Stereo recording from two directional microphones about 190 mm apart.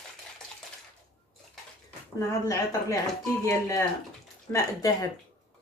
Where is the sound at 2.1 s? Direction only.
15° left (ahead or behind).